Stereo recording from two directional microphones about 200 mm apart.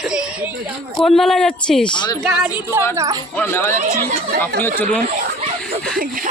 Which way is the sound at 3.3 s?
10° left (ahead or behind).